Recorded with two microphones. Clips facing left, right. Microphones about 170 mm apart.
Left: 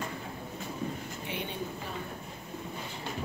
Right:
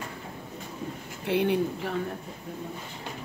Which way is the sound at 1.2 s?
80° right.